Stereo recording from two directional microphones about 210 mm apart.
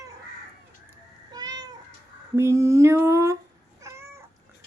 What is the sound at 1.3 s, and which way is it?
Cat, 20° right (ahead or behind).